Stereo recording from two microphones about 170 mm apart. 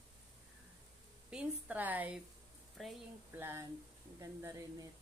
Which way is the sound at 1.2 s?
10° right (ahead or behind).